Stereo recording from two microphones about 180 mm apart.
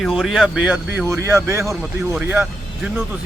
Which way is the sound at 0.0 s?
Centre (ahead or behind).